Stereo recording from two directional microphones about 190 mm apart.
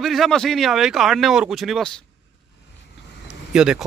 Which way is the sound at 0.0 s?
Centre (ahead or behind).